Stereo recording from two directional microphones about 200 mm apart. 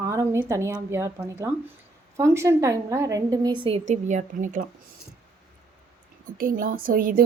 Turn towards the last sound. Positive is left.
turn(degrees=-45)  # may be behind; listen again after turning